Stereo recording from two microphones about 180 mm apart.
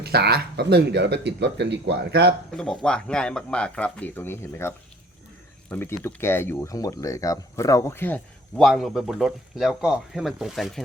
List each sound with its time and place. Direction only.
0.0 s speech: 65° right (ahead or behind)
2.6 s speech: 5° left (ahead or behind)
5.7 s speech: 10° left (ahead or behind)